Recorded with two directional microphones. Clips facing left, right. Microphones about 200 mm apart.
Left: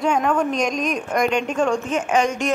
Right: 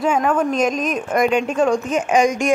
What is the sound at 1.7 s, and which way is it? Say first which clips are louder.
Speech: right 3 dB; 40° right (ahead or behind).